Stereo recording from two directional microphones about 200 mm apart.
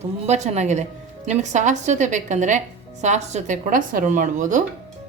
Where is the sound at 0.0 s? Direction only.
35° right (ahead or behind).